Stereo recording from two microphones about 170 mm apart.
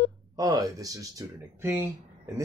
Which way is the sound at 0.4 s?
20° right (ahead or behind).